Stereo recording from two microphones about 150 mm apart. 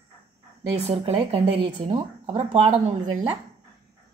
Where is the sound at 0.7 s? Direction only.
45° right (ahead or behind).